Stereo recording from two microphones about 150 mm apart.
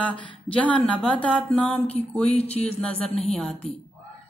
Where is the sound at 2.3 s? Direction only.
45° left (ahead or behind).